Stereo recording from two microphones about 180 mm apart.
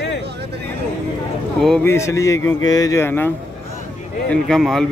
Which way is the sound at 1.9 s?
15° left (ahead or behind).